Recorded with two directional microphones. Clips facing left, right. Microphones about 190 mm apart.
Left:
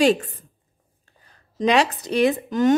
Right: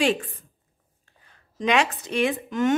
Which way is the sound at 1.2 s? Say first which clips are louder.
Left 4 dB; 35° left (ahead or behind).